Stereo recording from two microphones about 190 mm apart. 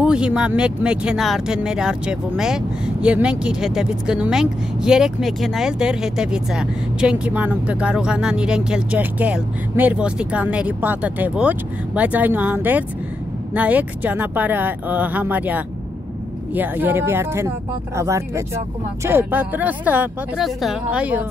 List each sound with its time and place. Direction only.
0.0 s speech: 5° right (ahead or behind)